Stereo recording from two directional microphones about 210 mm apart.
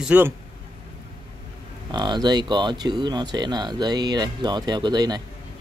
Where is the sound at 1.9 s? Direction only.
20° right (ahead or behind).